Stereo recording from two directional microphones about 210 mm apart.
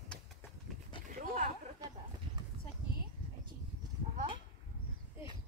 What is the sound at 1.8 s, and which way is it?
Livestock, 20° right (ahead or behind).